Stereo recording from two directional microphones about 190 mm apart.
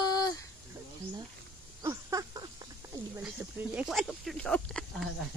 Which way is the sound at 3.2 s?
10° right (ahead or behind).